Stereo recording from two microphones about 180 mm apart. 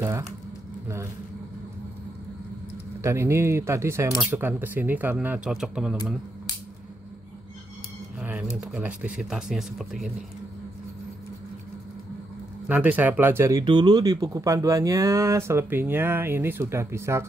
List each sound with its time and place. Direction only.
3.0 s speech: 15° right (ahead or behind)
8.2 s speech: 5° right (ahead or behind)
12.6 s speech: 10° right (ahead or behind)